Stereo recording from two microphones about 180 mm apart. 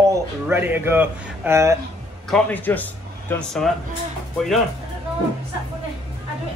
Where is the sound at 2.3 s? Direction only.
5° left (ahead or behind).